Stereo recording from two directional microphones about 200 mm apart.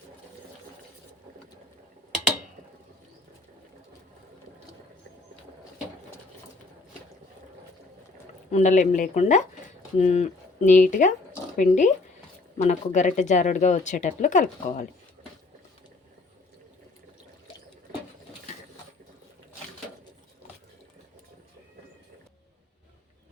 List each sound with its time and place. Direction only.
8.5 s speech: 35° left (ahead or behind)